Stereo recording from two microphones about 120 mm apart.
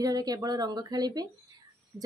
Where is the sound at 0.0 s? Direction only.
30° right (ahead or behind).